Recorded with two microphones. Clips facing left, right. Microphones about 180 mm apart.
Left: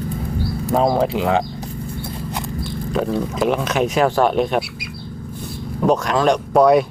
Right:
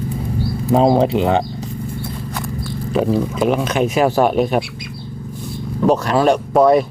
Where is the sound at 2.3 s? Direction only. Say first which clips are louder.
Right 1 dB; 20° left (ahead or behind).